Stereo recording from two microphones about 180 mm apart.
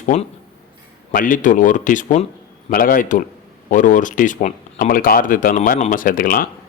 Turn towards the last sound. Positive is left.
turn(degrees=50)  # may be behind; listen again after turning